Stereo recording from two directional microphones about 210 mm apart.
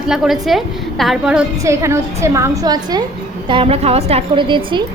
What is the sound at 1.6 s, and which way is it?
A woman's voice, 15° right (ahead or behind).